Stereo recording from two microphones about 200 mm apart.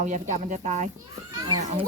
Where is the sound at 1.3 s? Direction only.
15° right (ahead or behind).